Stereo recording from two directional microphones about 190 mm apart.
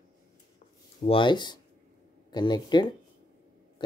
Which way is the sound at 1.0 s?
25° left (ahead or behind).